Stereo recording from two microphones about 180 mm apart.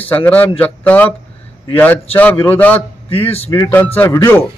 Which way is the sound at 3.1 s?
30° left (ahead or behind).